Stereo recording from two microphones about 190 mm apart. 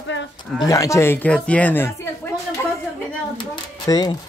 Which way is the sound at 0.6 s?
15° left (ahead or behind).